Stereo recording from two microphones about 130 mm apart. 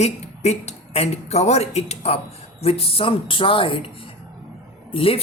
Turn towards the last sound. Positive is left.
turn(degrees=45)  # may be behind; listen again after turning